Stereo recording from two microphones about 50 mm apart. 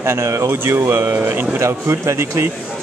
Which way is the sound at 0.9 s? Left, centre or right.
Right.